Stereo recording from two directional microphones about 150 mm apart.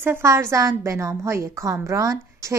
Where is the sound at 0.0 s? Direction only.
15° right (ahead or behind).